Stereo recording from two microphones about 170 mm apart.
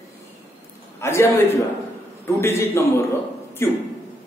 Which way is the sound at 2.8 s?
15° left (ahead or behind).